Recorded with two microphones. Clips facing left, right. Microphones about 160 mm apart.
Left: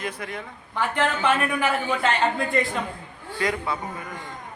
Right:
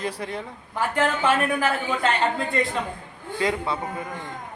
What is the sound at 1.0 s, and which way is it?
Speech, 5° right (ahead or behind).